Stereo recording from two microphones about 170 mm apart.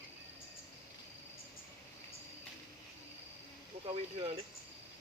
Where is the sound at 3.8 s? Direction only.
35° right (ahead or behind).